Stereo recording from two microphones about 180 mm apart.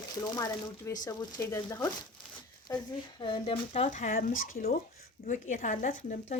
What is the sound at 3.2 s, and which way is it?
Speech, 30° left (ahead or behind).